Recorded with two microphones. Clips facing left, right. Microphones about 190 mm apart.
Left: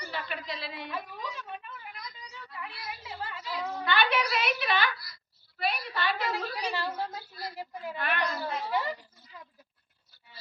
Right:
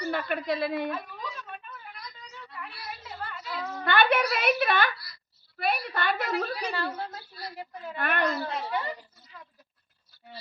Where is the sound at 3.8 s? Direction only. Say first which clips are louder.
Right 5 dB; 55° right (ahead or behind).